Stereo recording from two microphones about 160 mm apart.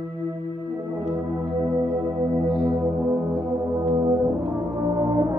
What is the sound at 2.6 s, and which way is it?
Brass instrument, 20° right (ahead or behind).